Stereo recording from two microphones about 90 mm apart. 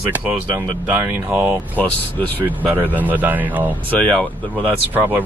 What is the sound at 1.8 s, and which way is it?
Speech, 15° left (ahead or behind).